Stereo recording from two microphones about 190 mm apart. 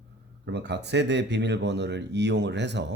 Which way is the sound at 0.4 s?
65° right (ahead or behind).